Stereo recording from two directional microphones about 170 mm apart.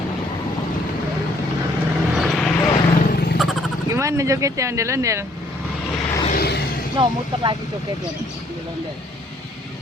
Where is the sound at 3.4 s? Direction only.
Centre (ahead or behind).